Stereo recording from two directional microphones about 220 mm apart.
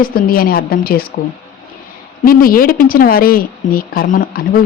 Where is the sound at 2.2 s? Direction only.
40° left (ahead or behind).